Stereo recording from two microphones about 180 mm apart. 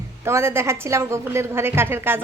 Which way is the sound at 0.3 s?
15° right (ahead or behind).